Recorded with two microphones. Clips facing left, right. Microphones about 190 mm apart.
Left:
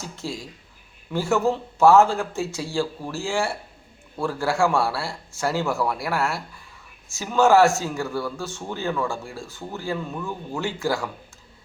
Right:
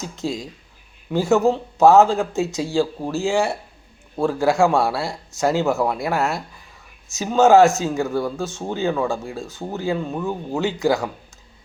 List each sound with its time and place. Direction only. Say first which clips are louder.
0.0 s speech: right 6 dB; 20° right (ahead or behind)
10.0 s speech: right 5 dB; 35° right (ahead or behind)
10.6 s speech: right 6 dB; 20° right (ahead or behind)